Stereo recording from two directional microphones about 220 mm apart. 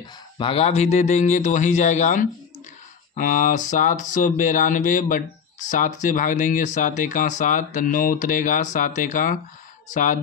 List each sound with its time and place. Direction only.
0.4 s speech: 25° left (ahead or behind)